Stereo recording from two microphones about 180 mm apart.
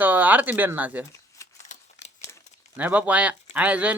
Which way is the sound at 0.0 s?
10° right (ahead or behind).